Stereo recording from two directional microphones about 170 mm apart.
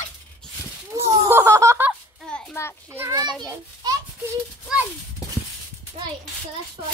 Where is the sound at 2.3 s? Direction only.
15° left (ahead or behind).